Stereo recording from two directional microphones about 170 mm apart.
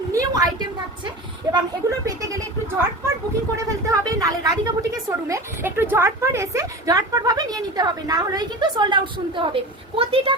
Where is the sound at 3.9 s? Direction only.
20° right (ahead or behind).